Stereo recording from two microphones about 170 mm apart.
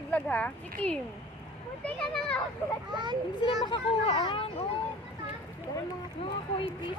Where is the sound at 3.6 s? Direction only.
25° left (ahead or behind).